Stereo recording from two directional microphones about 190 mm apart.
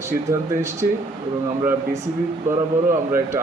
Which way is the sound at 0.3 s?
15° right (ahead or behind).